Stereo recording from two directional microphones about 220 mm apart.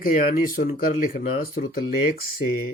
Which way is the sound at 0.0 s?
40° left (ahead or behind).